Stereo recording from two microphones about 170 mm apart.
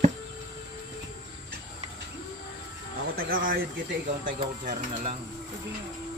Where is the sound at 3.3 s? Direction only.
65° right (ahead or behind).